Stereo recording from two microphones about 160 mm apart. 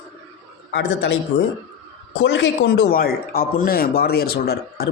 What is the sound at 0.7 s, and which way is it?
Speech, 90° left.